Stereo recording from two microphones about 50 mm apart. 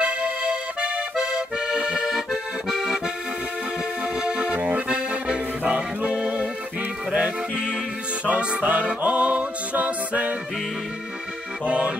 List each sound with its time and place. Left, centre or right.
0.0 s accordion: centre
4.0 s accordion: right
5.6 s music: right
11.6 s music: right